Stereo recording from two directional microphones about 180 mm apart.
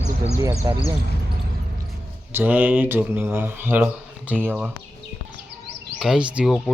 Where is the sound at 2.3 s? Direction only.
10° right (ahead or behind).